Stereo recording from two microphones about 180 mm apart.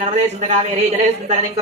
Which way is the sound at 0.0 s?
40° right (ahead or behind).